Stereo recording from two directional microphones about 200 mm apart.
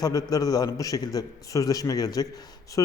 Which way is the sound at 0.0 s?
20° left (ahead or behind).